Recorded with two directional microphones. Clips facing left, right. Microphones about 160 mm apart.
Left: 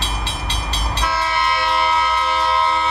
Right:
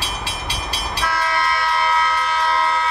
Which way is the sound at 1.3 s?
25° left (ahead or behind).